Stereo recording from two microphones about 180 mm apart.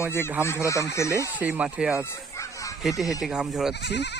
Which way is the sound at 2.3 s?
15° left (ahead or behind).